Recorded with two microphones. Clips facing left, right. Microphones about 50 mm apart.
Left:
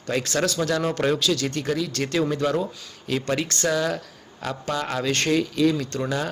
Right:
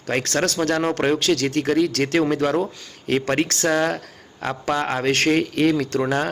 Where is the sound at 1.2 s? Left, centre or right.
Right.